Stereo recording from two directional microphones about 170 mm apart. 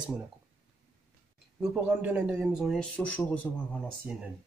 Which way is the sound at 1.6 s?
5° right (ahead or behind).